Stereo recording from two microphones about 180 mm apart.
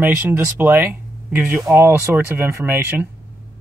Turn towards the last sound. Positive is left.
turn(degrees=-15)  # may be behind; listen again after turning